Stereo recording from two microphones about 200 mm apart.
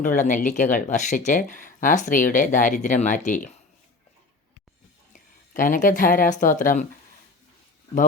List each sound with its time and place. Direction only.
0.0 s speech: 40° left (ahead or behind)
5.1 s speech: 40° left (ahead or behind)